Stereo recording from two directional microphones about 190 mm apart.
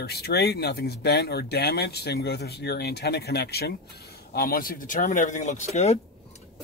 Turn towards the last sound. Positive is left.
turn(degrees=35)  # may be behind; listen again after turning